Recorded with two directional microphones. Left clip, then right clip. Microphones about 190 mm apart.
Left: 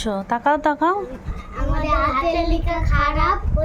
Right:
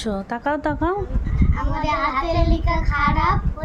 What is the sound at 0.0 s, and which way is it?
Speech, 10° right (ahead or behind).